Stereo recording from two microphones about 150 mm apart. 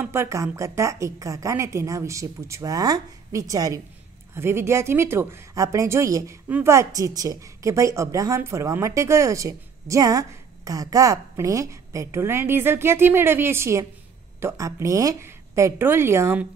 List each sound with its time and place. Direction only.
0.0 s a woman's voice: 15° right (ahead or behind)